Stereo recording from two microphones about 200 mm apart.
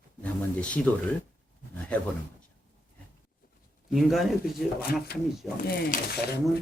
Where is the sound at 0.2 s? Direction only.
5° left (ahead or behind).